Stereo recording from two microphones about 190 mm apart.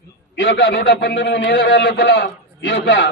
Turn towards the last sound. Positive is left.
turn(degrees=75)  # may be behind; listen again after turning